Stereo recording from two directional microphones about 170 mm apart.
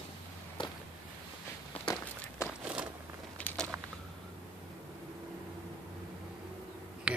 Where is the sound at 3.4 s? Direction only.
5° left (ahead or behind).